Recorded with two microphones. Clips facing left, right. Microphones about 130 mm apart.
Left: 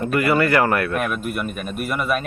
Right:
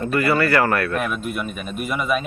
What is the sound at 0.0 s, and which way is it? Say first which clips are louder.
Speech: left 1 dB; 15° left (ahead or behind).